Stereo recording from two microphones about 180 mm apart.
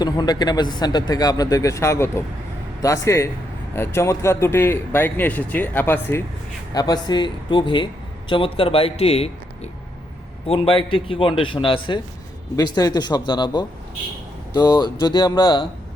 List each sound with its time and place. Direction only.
0.0 s speech: 25° left (ahead or behind)
6.7 s a man's voice: 20° left (ahead or behind)